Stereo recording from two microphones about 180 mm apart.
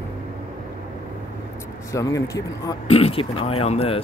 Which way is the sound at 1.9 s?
15° left (ahead or behind).